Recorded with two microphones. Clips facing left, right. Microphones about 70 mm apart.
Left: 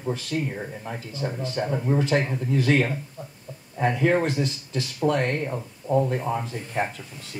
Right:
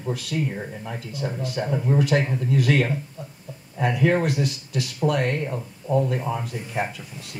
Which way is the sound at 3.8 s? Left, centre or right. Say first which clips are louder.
Even; left.